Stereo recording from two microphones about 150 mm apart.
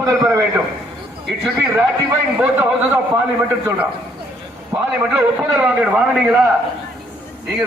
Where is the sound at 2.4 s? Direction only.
15° right (ahead or behind).